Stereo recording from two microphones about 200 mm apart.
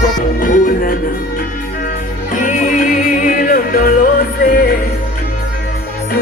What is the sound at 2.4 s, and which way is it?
Music, 40° left (ahead or behind).